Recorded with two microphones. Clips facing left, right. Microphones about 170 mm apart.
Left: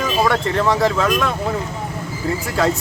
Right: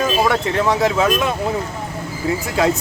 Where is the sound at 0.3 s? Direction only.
5° right (ahead or behind).